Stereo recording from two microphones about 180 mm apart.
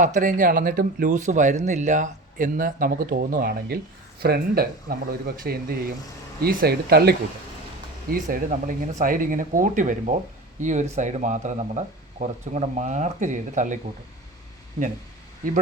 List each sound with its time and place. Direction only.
0.0 s speech: 45° right (ahead or behind); by 7.2 s 60° right (ahead or behind)
8.1 s speech: 50° right (ahead or behind)